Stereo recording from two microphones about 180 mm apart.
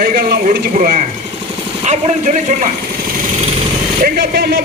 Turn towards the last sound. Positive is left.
turn(degrees=-60)  # may be behind; listen again after turning